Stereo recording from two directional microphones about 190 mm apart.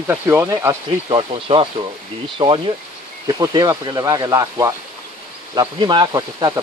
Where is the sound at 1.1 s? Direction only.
30° right (ahead or behind).